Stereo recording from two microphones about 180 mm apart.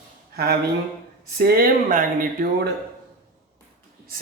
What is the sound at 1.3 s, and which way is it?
Speech, 60° right (ahead or behind).